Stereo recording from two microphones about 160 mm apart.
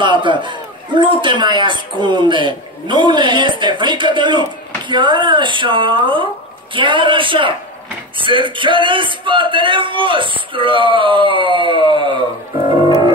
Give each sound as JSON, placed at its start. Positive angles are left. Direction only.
{"t": 0.0, "sound": "a man's voice", "side_deg": -30}